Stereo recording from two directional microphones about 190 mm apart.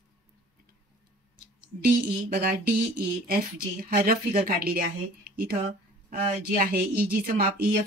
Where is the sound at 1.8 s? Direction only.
50° right (ahead or behind).